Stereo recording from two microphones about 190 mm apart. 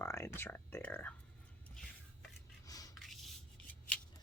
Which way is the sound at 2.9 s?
Centre (ahead or behind).